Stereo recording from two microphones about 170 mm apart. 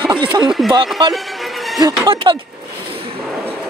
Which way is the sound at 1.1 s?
Centre (ahead or behind).